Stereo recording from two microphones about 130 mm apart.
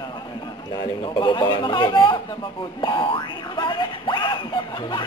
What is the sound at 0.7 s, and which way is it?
Speech, 40° left (ahead or behind).